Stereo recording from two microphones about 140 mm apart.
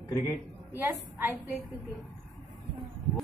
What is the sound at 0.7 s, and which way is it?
Speech, 15° right (ahead or behind).